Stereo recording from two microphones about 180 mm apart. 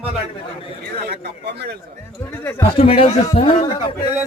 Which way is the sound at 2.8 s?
30° left (ahead or behind).